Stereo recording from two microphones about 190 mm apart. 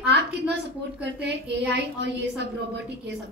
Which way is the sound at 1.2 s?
60° right (ahead or behind).